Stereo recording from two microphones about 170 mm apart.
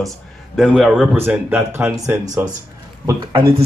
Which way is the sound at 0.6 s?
Centre (ahead or behind).